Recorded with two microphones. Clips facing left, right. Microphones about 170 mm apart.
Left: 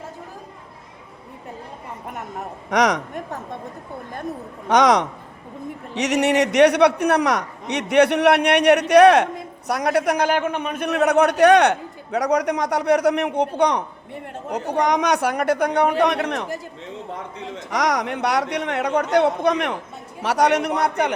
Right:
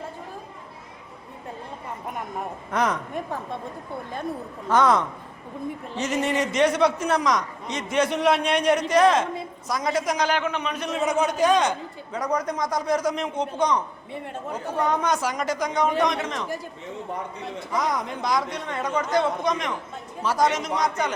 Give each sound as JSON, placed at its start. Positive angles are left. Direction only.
{"t": 2.6, "sound": "speech", "side_deg": 80}
{"t": 4.7, "sound": "a man's voice", "side_deg": 80}
{"t": 17.6, "sound": "a man's voice", "side_deg": 80}